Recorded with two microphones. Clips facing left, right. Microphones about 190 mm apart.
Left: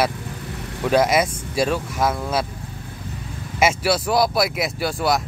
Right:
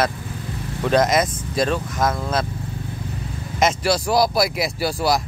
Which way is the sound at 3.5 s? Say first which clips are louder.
Even; 5° left (ahead or behind).